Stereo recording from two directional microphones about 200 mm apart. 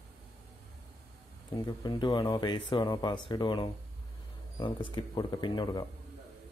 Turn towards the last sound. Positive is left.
turn(degrees=20)  # may be behind; listen again after turning